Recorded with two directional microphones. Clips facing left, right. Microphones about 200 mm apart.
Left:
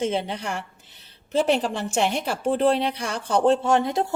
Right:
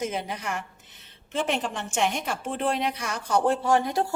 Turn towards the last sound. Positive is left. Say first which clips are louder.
# left 2 dB
turn(degrees=25)  # may be behind; listen again after turning